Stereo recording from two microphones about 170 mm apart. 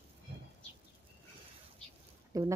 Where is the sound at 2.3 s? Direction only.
20° right (ahead or behind).